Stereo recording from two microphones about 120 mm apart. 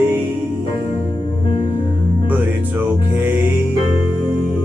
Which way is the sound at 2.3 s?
15° right (ahead or behind).